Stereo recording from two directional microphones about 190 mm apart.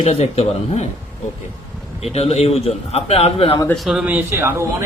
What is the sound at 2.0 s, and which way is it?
A man's voice, 35° left (ahead or behind).